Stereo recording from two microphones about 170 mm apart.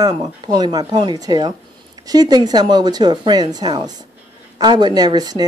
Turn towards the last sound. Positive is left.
turn(degrees=-25)  # may be behind; listen again after turning